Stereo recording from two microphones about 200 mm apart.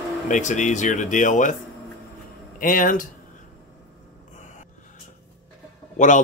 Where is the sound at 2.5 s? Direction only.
45° left (ahead or behind).